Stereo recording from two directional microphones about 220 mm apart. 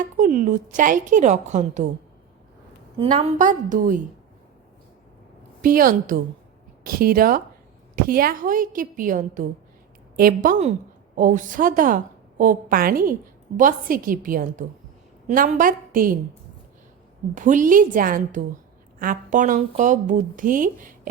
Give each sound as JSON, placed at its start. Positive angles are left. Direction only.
{"t": 0.0, "sound": "speech", "side_deg": -35}
{"t": 3.0, "sound": "speech", "side_deg": -30}
{"t": 5.6, "sound": "speech", "side_deg": -40}
{"t": 17.3, "sound": "speech", "side_deg": -35}